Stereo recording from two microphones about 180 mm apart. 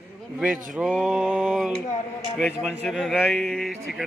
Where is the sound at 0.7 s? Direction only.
5° right (ahead or behind).